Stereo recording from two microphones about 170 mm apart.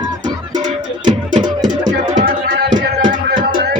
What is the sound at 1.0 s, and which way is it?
Music, 25° right (ahead or behind).